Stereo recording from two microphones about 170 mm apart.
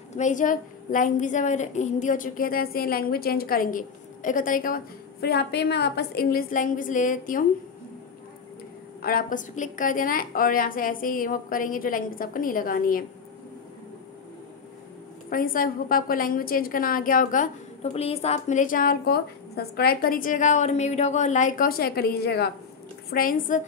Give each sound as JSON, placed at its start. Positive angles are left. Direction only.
{"t": 0.1, "sound": "a woman's voice", "side_deg": 45}
{"t": 9.0, "sound": "a woman's voice", "side_deg": 55}
{"t": 15.2, "sound": "a woman's voice", "side_deg": 55}
{"t": 23.0, "sound": "a woman's voice", "side_deg": 55}